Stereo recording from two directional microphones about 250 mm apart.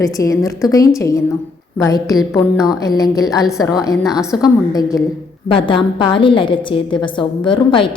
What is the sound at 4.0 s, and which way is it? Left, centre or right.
Speech, centre.